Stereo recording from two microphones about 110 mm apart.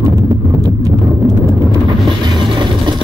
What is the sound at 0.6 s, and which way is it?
Vehicle, 35° right (ahead or behind).